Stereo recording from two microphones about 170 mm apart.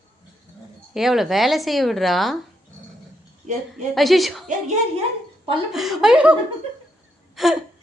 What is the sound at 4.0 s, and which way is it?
Speech, centre (ahead or behind).